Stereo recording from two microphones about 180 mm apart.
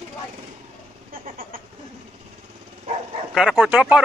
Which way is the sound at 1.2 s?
50° right (ahead or behind).